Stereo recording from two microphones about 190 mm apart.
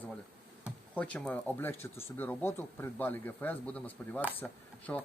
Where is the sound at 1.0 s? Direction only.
5° left (ahead or behind).